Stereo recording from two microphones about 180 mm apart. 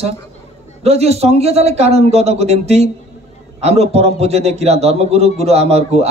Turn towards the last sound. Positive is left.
turn(degrees=-35)  # may be behind; listen again after turning